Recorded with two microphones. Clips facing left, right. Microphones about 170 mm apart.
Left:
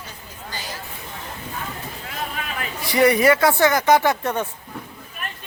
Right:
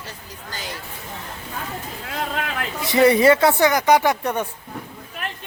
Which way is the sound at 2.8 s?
20° right (ahead or behind).